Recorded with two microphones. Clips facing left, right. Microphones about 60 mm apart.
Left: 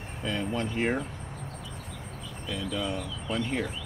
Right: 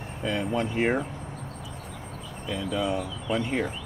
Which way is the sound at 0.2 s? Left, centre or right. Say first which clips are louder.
Right 3 dB; centre.